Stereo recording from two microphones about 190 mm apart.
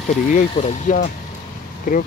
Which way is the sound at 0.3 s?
40° left (ahead or behind).